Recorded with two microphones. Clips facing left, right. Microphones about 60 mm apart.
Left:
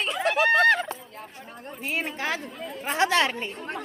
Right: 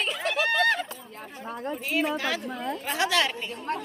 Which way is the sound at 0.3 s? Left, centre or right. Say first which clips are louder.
Left 5 dB; left.